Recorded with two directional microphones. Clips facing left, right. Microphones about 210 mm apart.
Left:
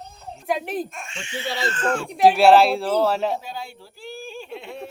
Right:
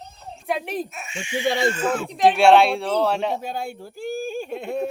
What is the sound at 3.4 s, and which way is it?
Speech, 50° right (ahead or behind).